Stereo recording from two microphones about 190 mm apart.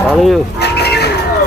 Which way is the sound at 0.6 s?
60° left (ahead or behind).